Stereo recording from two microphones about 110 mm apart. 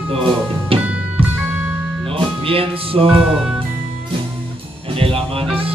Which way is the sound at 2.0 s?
55° right (ahead or behind).